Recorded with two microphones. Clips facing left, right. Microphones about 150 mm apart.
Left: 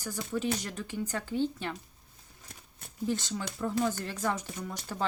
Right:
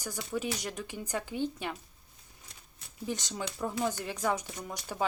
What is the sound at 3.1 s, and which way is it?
Speech, 15° right (ahead or behind).